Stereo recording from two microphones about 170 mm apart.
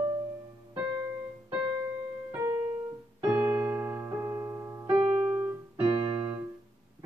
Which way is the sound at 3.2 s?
10° right (ahead or behind).